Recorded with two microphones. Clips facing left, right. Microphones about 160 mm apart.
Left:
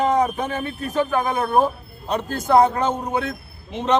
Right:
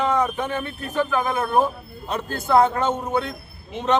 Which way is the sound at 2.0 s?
45° left (ahead or behind).